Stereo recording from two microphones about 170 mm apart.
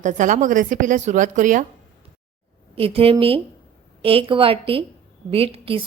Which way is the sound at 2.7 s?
35° right (ahead or behind).